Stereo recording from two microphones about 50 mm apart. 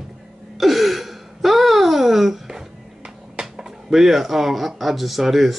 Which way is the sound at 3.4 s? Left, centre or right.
Centre.